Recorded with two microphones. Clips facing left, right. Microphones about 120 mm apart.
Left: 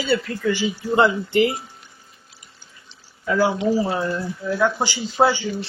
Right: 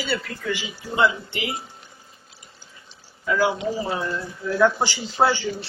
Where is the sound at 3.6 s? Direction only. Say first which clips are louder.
Left 5 dB; 30° left (ahead or behind).